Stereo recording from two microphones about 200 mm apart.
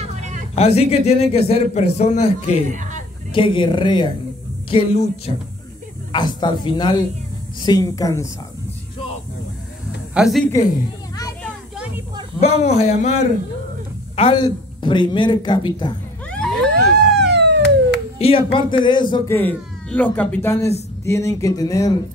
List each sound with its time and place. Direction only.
0.0 s a sound: 35° right (ahead or behind)
0.6 s a man's voice: 30° left (ahead or behind)
2.7 s speech: 40° right (ahead or behind)
3.3 s a man's voice: 25° left (ahead or behind)
10.1 s a woman's voice: centre (ahead or behind)
12.4 s a man's voice: 35° left (ahead or behind)
16.3 s vehicle: 5° left (ahead or behind)
17.1 s police car: 60° right (ahead or behind)
18.2 s speech: 25° left (ahead or behind)
19.3 s speech: 10° left (ahead or behind)